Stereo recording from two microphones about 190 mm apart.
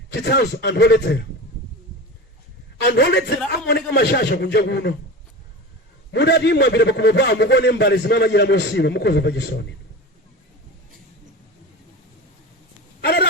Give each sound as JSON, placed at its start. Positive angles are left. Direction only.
{"t": 0.1, "sound": "a man's voice", "side_deg": 60}
{"t": 3.0, "sound": "a man's voice", "side_deg": 60}
{"t": 6.1, "sound": "a man's voice", "side_deg": 65}
{"t": 13.0, "sound": "a sound", "side_deg": 60}